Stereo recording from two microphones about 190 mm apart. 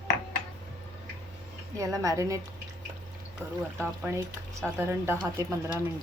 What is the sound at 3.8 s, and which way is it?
A woman's voice, 15° right (ahead or behind).